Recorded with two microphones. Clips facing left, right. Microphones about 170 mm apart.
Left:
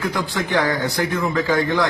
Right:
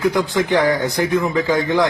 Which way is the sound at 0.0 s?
20° right (ahead or behind).